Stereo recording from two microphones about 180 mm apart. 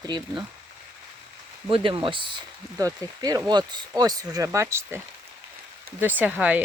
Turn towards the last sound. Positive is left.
turn(degrees=-10)  # may be behind; listen again after turning